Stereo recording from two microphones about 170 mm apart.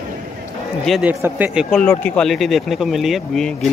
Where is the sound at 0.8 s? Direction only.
Centre (ahead or behind).